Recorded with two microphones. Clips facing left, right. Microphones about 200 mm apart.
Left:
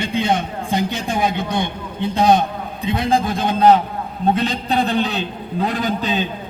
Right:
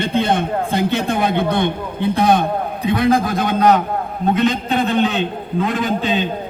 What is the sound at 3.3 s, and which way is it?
A man's voice, 30° left (ahead or behind).